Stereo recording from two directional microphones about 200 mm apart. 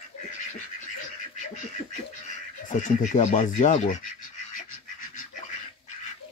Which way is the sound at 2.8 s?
40° left (ahead or behind).